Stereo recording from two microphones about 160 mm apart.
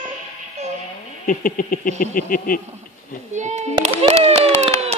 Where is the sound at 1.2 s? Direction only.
60° left (ahead or behind).